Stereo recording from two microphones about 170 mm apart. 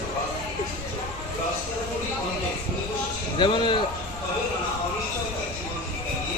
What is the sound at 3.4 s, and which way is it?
Speech, 30° left (ahead or behind).